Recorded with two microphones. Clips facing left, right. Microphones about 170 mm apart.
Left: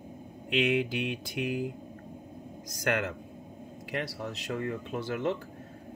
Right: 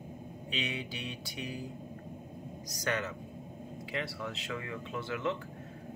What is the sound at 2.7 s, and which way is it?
Speech, 50° left (ahead or behind).